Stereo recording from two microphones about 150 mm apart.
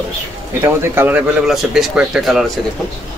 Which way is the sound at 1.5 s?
5° right (ahead or behind).